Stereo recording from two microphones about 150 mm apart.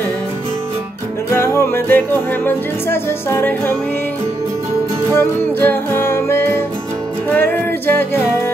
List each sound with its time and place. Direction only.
1.3 s music: 15° left (ahead or behind)
5.1 s music: 15° left (ahead or behind)